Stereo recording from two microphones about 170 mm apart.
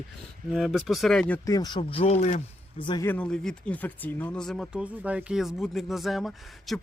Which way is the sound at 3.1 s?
5° left (ahead or behind).